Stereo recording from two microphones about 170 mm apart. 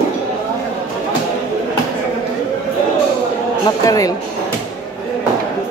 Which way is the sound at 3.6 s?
20° left (ahead or behind).